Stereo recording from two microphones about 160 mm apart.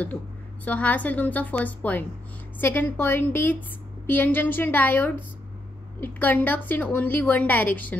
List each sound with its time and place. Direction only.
0.7 s a woman's voice: 10° left (ahead or behind)